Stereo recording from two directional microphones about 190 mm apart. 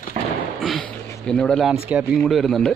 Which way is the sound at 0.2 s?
45° right (ahead or behind).